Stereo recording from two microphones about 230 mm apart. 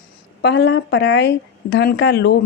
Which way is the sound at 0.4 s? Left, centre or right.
Left.